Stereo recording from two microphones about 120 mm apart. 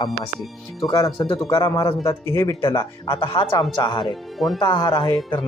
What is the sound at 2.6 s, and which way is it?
Speech, 40° left (ahead or behind).